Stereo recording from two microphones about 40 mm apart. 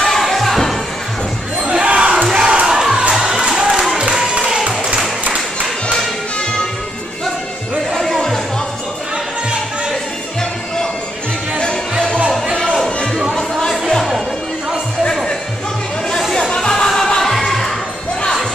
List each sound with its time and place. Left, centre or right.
0.0 s music: centre
1.6 s crowd: right
2.3 s battle cry: right
3.1 s crowd: centre
4.3 s a sound: centre
7.9 s music: centre
12.8 s a sound: centre
13.3 s music: centre
16.4 s music: centre